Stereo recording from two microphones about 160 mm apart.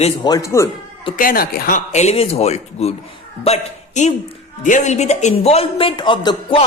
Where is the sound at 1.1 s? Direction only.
65° left (ahead or behind).